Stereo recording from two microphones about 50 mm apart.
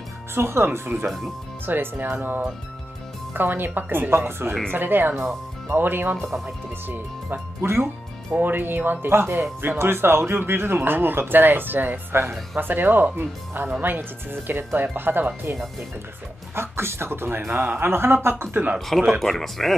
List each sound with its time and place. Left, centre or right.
0.3 s speech: right
4.7 s speech: right
7.6 s speech: right
8.3 s speech: right
16.5 s speech: right
18.9 s speech: centre